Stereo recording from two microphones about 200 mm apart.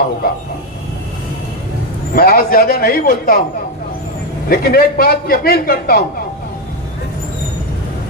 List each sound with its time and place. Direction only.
2.1 s a man's voice: 50° left (ahead or behind)
4.4 s a man's voice: 50° left (ahead or behind)